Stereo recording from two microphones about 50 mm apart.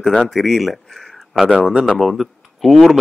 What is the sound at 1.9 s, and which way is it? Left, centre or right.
Speech, centre.